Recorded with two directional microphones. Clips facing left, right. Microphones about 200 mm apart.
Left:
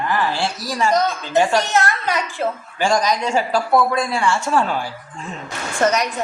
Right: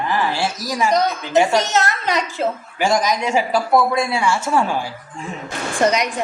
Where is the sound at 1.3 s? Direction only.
20° right (ahead or behind).